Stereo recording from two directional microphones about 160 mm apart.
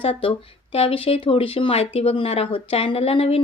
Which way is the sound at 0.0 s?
35° left (ahead or behind).